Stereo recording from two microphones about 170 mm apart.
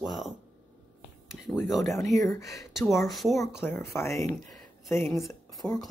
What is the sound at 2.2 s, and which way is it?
Speech, 20° left (ahead or behind).